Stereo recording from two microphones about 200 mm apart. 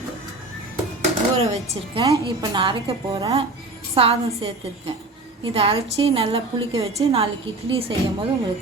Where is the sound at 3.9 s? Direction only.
30° right (ahead or behind).